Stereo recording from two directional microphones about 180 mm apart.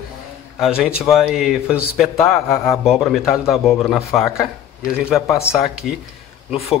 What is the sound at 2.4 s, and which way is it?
Speech, 15° left (ahead or behind).